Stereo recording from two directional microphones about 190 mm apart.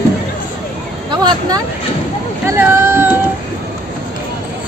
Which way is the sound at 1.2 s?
20° right (ahead or behind).